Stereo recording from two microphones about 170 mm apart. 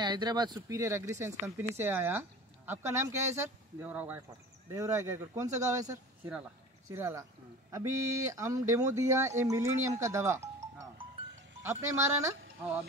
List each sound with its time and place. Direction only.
0.0 s speech: 25° right (ahead or behind)